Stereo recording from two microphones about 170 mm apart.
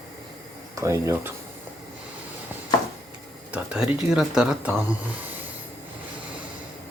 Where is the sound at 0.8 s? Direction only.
15° right (ahead or behind).